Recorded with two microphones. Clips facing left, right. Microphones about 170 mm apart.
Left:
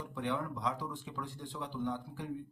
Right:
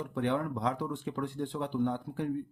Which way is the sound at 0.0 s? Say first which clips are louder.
Right 6 dB; 60° right (ahead or behind).